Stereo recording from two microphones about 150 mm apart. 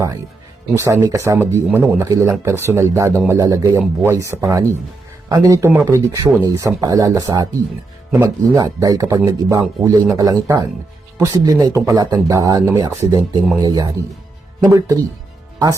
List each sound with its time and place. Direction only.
0.7 s speech: 20° right (ahead or behind)